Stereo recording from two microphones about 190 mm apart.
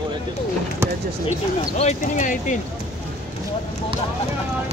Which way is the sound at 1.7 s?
35° left (ahead or behind).